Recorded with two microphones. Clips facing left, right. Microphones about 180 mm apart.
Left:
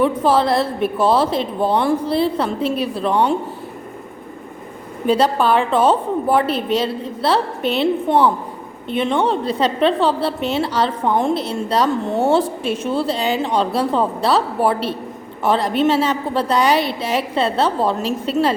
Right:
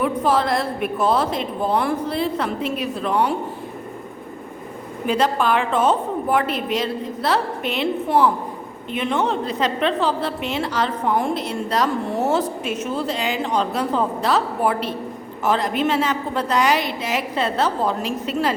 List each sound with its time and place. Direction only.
0.0 s a woman's voice: 30° left (ahead or behind)
5.0 s a woman's voice: 30° left (ahead or behind)